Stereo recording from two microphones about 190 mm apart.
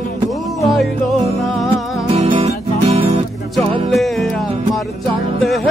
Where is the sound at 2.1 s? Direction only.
30° right (ahead or behind).